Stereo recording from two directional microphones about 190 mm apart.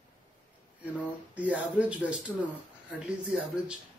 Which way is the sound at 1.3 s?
5° right (ahead or behind).